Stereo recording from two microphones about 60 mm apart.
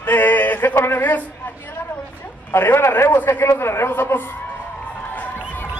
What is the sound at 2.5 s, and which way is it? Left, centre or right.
A man's voice, left.